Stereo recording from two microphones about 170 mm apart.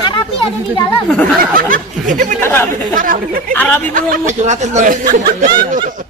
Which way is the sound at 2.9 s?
55° right (ahead or behind).